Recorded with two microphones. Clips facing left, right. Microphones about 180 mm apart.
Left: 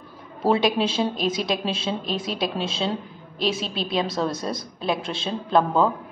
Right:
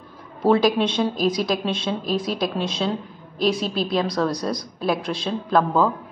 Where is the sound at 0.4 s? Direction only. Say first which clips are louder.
Right 3 dB; centre (ahead or behind).